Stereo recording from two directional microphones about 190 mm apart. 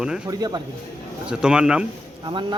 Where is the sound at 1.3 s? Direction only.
5° right (ahead or behind).